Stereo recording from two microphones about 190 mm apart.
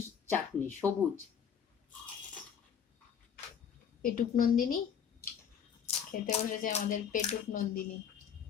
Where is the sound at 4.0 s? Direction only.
45° left (ahead or behind).